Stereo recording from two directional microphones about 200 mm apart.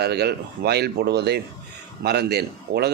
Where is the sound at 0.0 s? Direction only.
55° right (ahead or behind).